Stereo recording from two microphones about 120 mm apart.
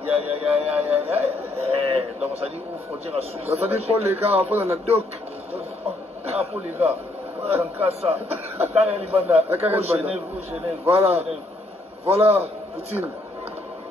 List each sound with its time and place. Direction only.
0.1 s speech: 55° right (ahead or behind)
6.2 s speech: 55° right (ahead or behind)